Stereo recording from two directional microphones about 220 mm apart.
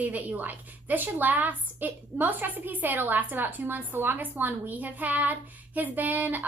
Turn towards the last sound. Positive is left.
turn(degrees=-10)  # may be behind; listen again after turning